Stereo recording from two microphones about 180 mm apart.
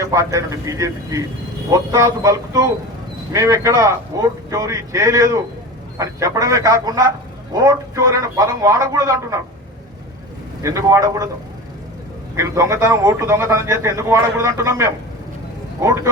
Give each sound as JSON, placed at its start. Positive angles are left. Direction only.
{"t": 0.0, "sound": "a man's voice", "side_deg": -15}
{"t": 10.6, "sound": "speech", "side_deg": -20}
{"t": 12.4, "sound": "a man's voice", "side_deg": -15}